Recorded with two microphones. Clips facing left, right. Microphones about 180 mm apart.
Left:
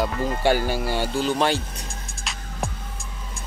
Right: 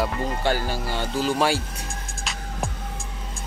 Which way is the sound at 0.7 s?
10° left (ahead or behind).